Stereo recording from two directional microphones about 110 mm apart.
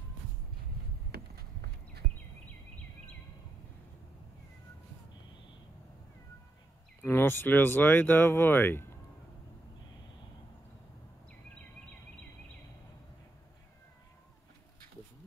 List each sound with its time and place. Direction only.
7.0 s speech: 20° left (ahead or behind)